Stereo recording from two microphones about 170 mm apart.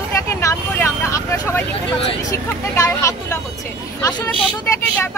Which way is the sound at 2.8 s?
15° left (ahead or behind).